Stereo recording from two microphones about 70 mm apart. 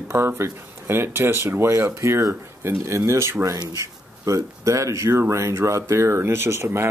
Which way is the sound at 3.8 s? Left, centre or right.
Right.